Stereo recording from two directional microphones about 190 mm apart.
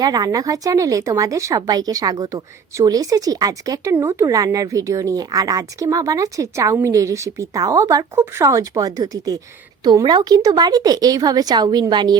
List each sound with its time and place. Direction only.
0.0 s speech: 20° right (ahead or behind)